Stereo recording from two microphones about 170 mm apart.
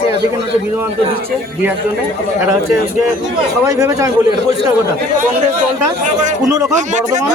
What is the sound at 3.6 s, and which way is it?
Speech, 20° right (ahead or behind).